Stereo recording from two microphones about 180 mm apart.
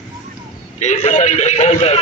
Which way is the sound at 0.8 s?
40° left (ahead or behind).